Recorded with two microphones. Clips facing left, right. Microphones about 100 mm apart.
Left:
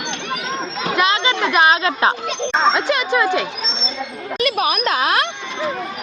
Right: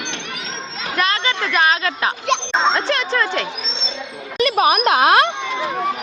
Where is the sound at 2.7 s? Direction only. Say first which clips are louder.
Left 2 dB; 10° left (ahead or behind).